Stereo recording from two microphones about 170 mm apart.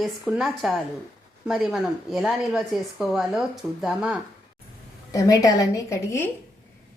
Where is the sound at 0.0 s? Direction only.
Centre (ahead or behind).